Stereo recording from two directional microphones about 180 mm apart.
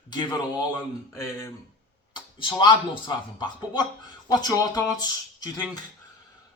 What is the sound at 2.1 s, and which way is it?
Speech, 25° left (ahead or behind).